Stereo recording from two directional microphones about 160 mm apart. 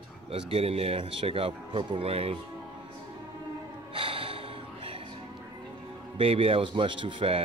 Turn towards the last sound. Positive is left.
turn(degrees=-35)  # may be behind; listen again after turning